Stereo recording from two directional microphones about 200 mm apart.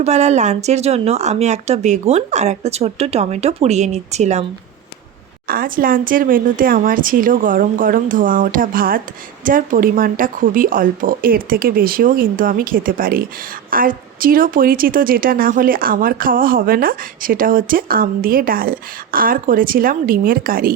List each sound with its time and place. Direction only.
0.0 s speech: 35° right (ahead or behind)
5.5 s a woman's voice: 45° right (ahead or behind)